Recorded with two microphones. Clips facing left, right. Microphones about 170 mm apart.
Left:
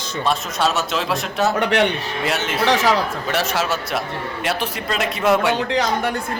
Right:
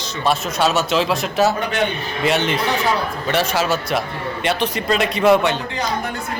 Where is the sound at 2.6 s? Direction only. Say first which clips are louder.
Left 3 dB; 90° left.